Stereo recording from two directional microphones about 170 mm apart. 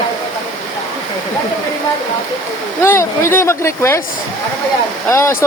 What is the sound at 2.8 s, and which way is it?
Speech, 15° left (ahead or behind).